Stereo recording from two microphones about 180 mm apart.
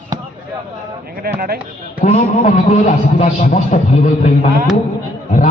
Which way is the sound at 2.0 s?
40° left (ahead or behind).